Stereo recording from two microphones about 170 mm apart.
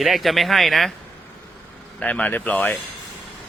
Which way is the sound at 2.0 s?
5° left (ahead or behind).